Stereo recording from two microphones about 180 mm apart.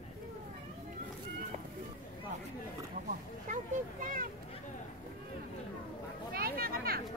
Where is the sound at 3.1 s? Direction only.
45° right (ahead or behind).